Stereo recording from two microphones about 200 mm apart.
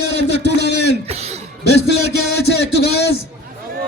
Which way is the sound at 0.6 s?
55° left (ahead or behind).